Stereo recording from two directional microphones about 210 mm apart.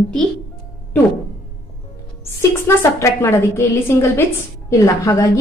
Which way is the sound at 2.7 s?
10° left (ahead or behind).